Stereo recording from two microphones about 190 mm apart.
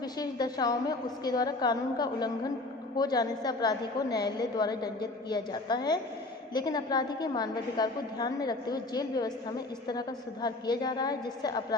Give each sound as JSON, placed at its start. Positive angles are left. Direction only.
{"t": 0.2, "sound": "a woman's voice", "side_deg": 20}